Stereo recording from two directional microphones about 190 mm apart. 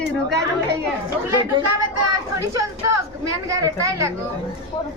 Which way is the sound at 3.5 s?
15° right (ahead or behind).